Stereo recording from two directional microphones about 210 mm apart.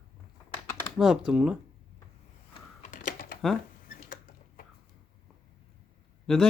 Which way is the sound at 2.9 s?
40° left (ahead or behind).